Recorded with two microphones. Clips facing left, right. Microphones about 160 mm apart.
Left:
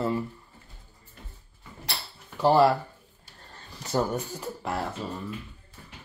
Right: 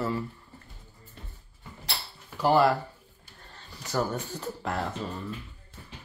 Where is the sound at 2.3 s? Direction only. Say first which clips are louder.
Left 2 dB; 25° left (ahead or behind).